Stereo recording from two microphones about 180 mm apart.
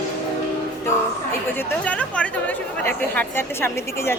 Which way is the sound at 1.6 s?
5° left (ahead or behind).